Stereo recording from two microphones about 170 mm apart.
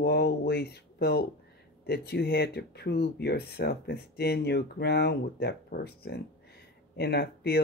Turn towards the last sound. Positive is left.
turn(degrees=70)  # may be behind; listen again after turning